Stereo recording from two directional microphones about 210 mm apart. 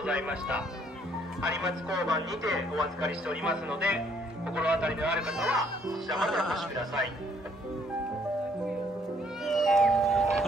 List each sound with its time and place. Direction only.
0.0 s speech: 5° right (ahead or behind)
2.0 s speech: 15° right (ahead or behind)
2.5 s speech: centre (ahead or behind)
9.4 s music: centre (ahead or behind)